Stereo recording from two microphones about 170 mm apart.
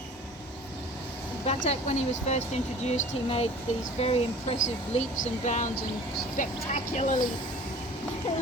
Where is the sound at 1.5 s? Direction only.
40° left (ahead or behind).